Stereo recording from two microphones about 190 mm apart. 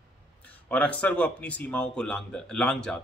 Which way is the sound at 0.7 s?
5° left (ahead or behind).